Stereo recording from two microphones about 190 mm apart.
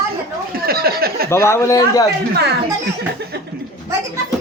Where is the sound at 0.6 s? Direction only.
55° right (ahead or behind).